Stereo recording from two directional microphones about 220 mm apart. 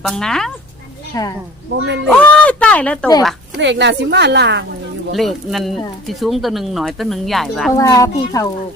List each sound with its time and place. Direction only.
0.0 s speech: centre (ahead or behind)
1.1 s speech: 15° left (ahead or behind)
3.6 s a woman's voice: 55° right (ahead or behind)
5.1 s speech: centre (ahead or behind)
7.8 s speech: 15° left (ahead or behind)